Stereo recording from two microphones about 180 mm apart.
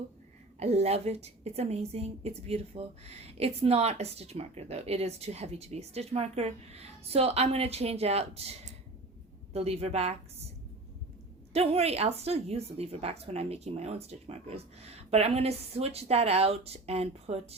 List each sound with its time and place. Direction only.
0.6 s a woman's voice: 35° right (ahead or behind)
11.5 s a woman's voice: 35° right (ahead or behind)